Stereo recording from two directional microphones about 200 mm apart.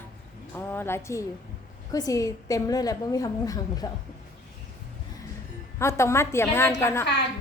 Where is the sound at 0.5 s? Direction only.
10° left (ahead or behind).